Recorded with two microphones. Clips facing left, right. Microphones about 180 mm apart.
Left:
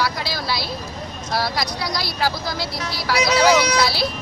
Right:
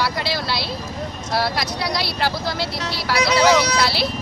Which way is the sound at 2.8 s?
25° right (ahead or behind).